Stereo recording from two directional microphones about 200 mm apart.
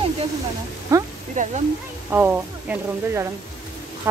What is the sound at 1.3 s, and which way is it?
Speech, 40° right (ahead or behind).